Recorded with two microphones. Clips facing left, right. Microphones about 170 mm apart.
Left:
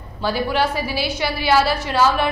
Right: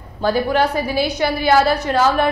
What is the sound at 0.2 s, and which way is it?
A woman's voice, 45° right (ahead or behind).